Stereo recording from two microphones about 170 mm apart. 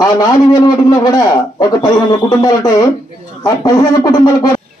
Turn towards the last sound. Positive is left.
turn(degrees=20)  # may be behind; listen again after turning